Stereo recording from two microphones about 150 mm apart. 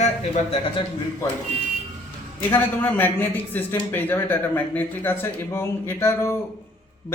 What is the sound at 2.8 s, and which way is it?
A man's voice, 10° left (ahead or behind).